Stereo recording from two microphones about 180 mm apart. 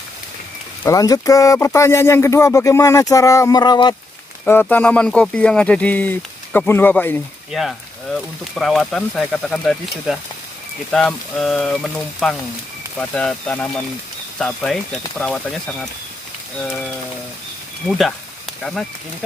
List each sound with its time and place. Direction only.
0.8 s speech: 20° left (ahead or behind)
4.5 s speech: 10° left (ahead or behind)
17.8 s speech: centre (ahead or behind)